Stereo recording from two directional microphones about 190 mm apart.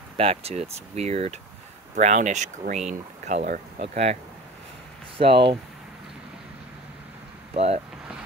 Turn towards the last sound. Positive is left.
turn(degrees=-35)  # may be behind; listen again after turning